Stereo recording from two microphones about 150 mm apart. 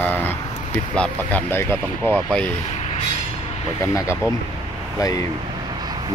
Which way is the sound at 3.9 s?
20° left (ahead or behind).